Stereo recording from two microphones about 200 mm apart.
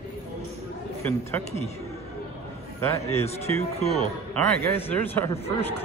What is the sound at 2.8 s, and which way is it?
Speech, 10° left (ahead or behind).